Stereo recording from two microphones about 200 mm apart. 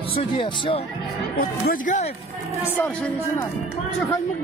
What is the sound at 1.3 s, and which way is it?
Speech, 45° left (ahead or behind).